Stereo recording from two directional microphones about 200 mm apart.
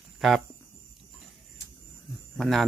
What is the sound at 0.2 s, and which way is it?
Speech, centre (ahead or behind).